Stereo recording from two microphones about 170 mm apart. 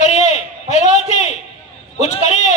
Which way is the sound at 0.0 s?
40° left (ahead or behind).